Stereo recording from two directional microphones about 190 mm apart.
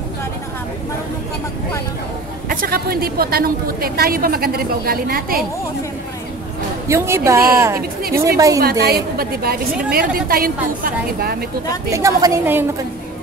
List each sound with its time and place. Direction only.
2.5 s a woman's voice: 50° right (ahead or behind)
6.9 s a woman's voice: 15° right (ahead or behind)
8.5 s a woman's voice: 55° right (ahead or behind)
11.9 s a woman's voice: 15° right (ahead or behind)